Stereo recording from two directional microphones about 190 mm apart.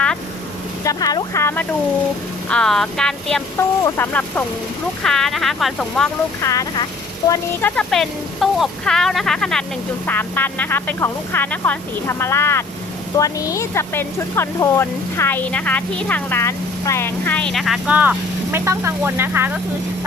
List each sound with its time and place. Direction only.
0.9 s speech: 20° left (ahead or behind)
2.5 s speech: 5° left (ahead or behind)
6.4 s speech: 15° left (ahead or behind); by 19.5 s 10° right (ahead or behind)